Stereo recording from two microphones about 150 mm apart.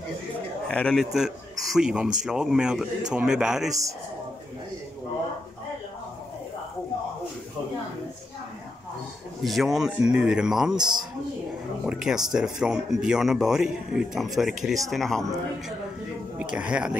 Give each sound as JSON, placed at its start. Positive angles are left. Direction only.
{"t": 0.7, "sound": "speech", "side_deg": 5}
{"t": 9.4, "sound": "speech", "side_deg": 0}
{"t": 10.8, "sound": "a man's voice", "side_deg": -30}
{"t": 11.8, "sound": "speech", "side_deg": -5}
{"t": 16.3, "sound": "speech", "side_deg": -10}